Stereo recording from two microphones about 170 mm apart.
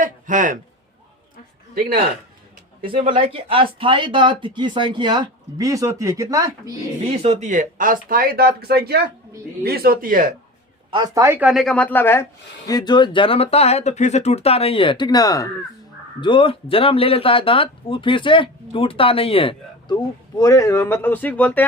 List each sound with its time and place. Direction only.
0.0 s a man's voice: 50° right (ahead or behind)
3.2 s speech: 30° right (ahead or behind)
7.1 s speech: 40° right (ahead or behind)
10.9 s speech: 20° right (ahead or behind); by 21.6 s 10° left (ahead or behind)